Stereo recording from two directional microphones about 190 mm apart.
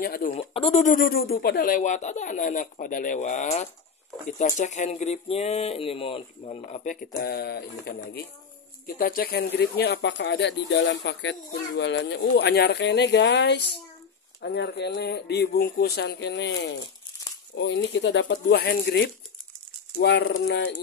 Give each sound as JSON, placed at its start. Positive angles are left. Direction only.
{"t": 0.0, "sound": "speech", "side_deg": 50}
{"t": 0.3, "sound": "speech", "side_deg": 30}